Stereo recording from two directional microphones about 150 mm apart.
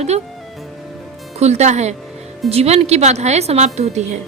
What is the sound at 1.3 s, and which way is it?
A woman's voice, 45° right (ahead or behind).